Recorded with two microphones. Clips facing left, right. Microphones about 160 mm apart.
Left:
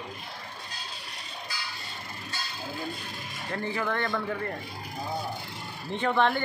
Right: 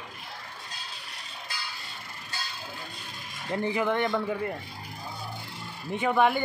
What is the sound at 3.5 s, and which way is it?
A man's voice, 15° right (ahead or behind).